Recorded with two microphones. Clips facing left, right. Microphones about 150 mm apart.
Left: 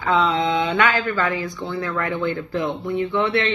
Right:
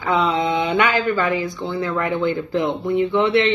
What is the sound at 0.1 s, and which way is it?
Speech, 15° right (ahead or behind).